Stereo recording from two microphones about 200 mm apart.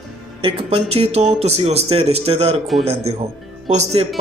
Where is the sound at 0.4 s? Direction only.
25° right (ahead or behind).